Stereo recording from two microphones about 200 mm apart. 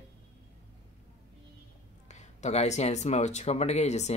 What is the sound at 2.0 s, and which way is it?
Speech, 35° left (ahead or behind).